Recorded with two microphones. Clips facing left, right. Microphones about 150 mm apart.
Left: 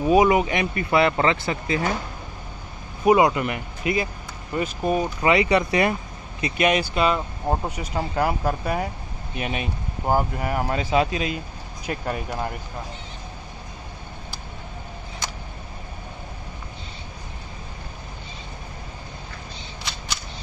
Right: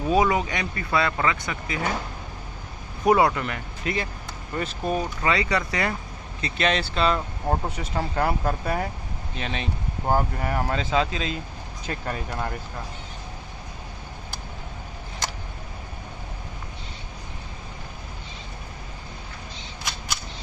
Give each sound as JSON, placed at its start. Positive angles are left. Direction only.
{"t": 0.0, "sound": "speech", "side_deg": 15}
{"t": 3.1, "sound": "speech", "side_deg": 15}